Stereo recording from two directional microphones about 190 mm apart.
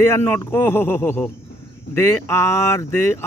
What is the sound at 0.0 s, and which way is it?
Speech, 10° left (ahead or behind).